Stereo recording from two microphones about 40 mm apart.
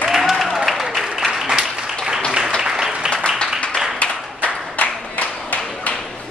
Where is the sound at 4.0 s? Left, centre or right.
Left.